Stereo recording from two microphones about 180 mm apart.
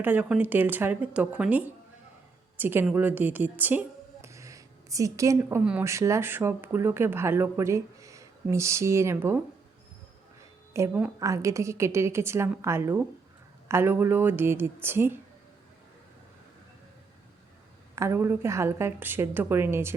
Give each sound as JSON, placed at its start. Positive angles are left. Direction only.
{"t": 0.0, "sound": "a woman's voice", "side_deg": -10}
{"t": 10.8, "sound": "a woman's voice", "side_deg": -10}
{"t": 17.9, "sound": "a woman's voice", "side_deg": -15}